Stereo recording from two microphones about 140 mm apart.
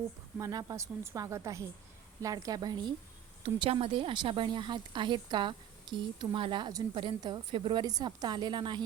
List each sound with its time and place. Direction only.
0.3 s a woman's voice: 25° right (ahead or behind)
3.4 s speech: 45° right (ahead or behind)